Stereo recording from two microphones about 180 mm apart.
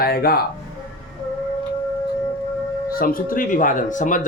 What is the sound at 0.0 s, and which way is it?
Speech, 60° left (ahead or behind).